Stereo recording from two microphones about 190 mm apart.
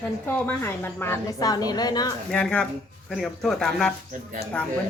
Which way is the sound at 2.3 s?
5° left (ahead or behind).